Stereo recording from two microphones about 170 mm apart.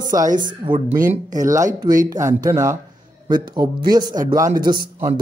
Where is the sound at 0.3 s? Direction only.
50° right (ahead or behind).